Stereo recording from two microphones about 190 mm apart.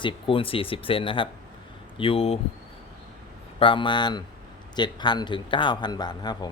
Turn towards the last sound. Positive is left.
turn(degrees=20)  # may be behind; listen again after turning